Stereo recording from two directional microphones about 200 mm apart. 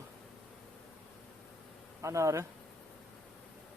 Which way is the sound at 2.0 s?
15° right (ahead or behind).